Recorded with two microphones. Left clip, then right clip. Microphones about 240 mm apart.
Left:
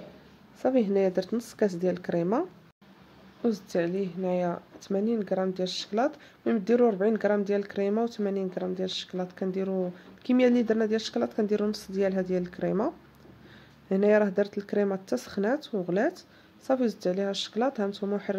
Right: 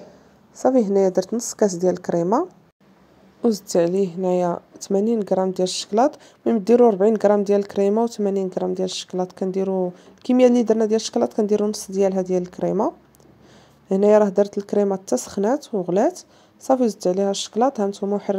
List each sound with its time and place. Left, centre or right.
1.0 s speech: centre
3.4 s speech: right